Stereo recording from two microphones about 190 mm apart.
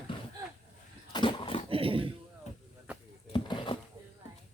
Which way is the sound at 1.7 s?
30° right (ahead or behind).